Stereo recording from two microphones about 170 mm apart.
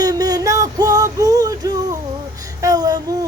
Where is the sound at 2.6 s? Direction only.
20° right (ahead or behind).